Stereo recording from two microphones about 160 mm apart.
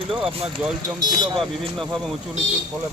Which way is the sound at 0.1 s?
5° right (ahead or behind).